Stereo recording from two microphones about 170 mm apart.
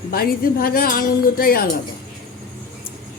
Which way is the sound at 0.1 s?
60° left (ahead or behind).